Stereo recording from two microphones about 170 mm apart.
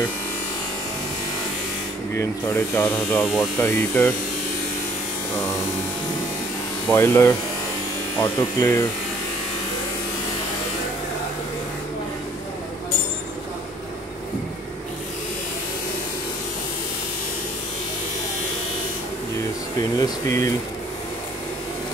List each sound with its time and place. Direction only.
2.1 s speech: 15° left (ahead or behind)
6.9 s speech: 15° left (ahead or behind)
20.0 s speech: 20° left (ahead or behind)